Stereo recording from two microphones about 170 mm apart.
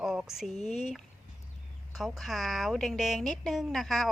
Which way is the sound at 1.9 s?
Centre (ahead or behind).